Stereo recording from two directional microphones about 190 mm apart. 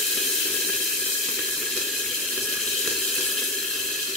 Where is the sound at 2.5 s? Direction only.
Centre (ahead or behind).